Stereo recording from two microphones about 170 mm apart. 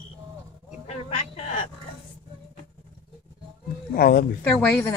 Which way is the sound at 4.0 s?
60° left (ahead or behind).